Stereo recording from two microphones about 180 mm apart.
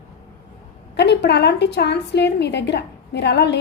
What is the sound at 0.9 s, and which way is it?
A woman's voice, 70° left (ahead or behind).